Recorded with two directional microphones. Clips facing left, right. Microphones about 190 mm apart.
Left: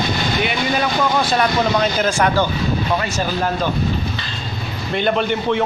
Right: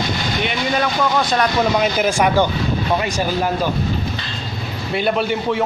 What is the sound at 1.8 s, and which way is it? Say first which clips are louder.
Speech: right 1 dB; 15° right (ahead or behind).